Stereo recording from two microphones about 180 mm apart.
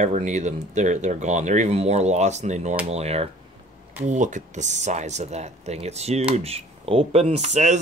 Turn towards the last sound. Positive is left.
turn(degrees=-40)  # may be behind; listen again after turning